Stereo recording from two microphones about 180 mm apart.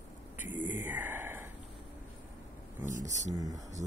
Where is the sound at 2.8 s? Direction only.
45° right (ahead or behind).